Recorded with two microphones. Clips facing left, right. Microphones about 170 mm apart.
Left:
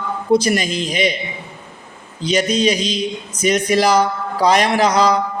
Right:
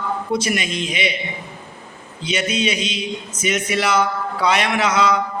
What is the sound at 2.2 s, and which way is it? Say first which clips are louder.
A man's voice: left 5 dB; 35° left (ahead or behind).